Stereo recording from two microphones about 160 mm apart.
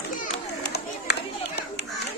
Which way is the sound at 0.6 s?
90° left.